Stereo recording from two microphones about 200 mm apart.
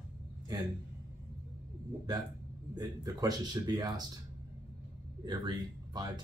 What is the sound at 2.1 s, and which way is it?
Speech, 20° right (ahead or behind).